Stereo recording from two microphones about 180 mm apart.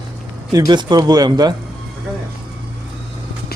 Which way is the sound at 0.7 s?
25° right (ahead or behind).